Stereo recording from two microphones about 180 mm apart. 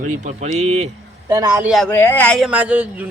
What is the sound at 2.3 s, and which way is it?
Speech, 5° right (ahead or behind).